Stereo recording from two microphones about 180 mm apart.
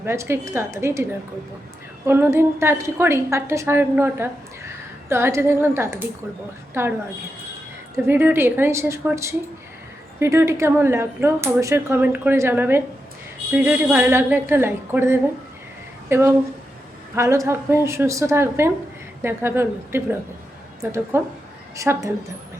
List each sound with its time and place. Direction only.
0.0 s a woman's voice: 15° right (ahead or behind)
2.0 s a woman's voice: 15° right (ahead or behind)
7.9 s a woman's voice: 10° right (ahead or behind)